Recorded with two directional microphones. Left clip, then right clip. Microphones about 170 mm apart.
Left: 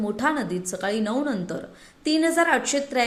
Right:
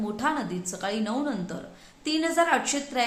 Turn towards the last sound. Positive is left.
turn(degrees=20)  # may be behind; listen again after turning